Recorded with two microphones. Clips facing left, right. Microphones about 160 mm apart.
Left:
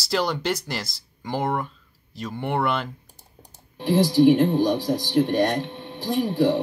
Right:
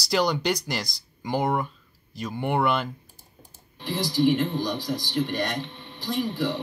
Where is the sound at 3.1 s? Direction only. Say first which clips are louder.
Left 1 dB; 70° left (ahead or behind).